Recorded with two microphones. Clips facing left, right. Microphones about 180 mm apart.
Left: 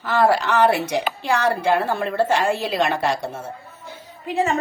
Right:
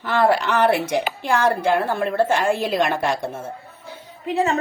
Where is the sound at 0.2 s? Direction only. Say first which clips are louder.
Left 1 dB; 55° right (ahead or behind).